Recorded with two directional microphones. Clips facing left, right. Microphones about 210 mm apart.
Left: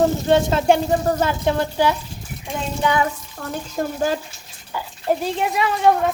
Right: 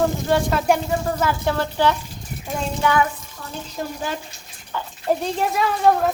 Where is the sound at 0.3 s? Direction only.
25° left (ahead or behind).